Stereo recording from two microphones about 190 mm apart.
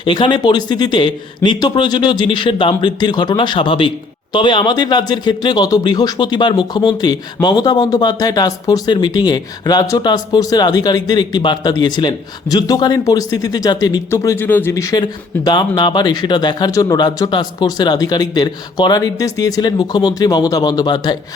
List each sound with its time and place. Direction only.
0.0 s speech: 25° left (ahead or behind)